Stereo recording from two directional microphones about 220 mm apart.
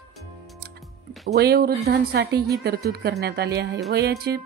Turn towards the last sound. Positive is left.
turn(degrees=-50)  # may be behind; listen again after turning